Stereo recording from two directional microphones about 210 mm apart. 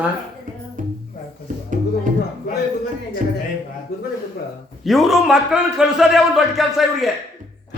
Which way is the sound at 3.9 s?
50° left (ahead or behind).